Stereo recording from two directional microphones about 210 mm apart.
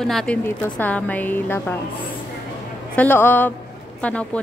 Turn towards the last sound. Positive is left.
turn(degrees=5)  # may be behind; listen again after turning